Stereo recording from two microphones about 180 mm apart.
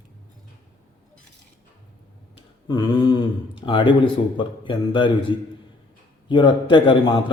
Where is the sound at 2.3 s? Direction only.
25° left (ahead or behind).